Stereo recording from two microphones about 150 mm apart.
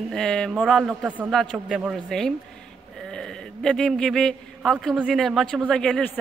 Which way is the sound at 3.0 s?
5° left (ahead or behind).